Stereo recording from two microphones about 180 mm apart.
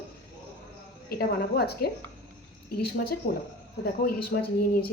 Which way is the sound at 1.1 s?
60° left (ahead or behind).